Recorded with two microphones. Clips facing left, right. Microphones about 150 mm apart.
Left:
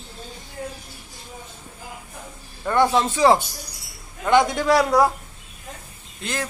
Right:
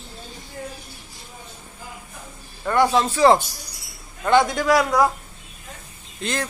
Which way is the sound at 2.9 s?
15° left (ahead or behind).